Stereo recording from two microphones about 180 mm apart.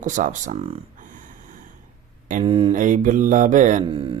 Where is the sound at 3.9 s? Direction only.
30° right (ahead or behind).